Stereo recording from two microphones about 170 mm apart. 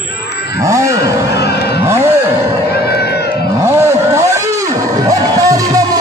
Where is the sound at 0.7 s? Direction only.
20° right (ahead or behind).